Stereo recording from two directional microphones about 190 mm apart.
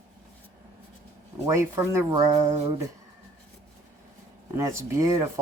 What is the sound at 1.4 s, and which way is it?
Speech, 15° right (ahead or behind).